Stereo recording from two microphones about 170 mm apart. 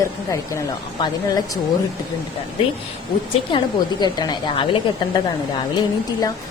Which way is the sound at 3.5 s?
25° left (ahead or behind).